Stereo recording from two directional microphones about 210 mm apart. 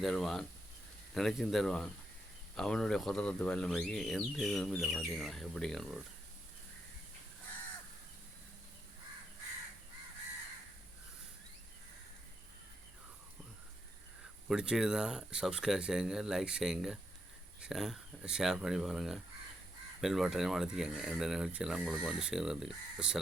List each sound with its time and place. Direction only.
0.0 s speech: centre (ahead or behind)
14.4 s speech: 5° right (ahead or behind)